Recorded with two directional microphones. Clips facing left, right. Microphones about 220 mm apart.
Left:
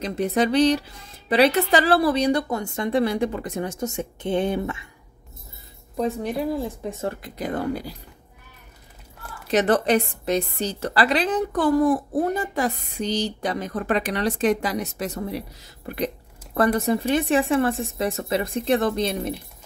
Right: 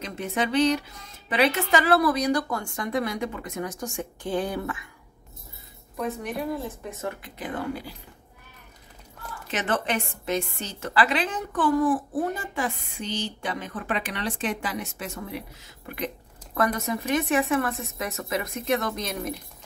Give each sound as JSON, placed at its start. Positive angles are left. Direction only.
{"t": 0.0, "sound": "speech", "side_deg": 35}
{"t": 7.0, "sound": "a woman's voice", "side_deg": 35}
{"t": 9.5, "sound": "a woman's voice", "side_deg": 35}